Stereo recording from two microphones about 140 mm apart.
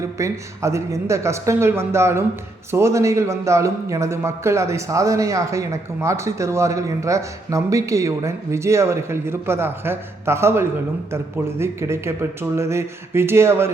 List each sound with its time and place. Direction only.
0.2 s a man's voice: 20° right (ahead or behind)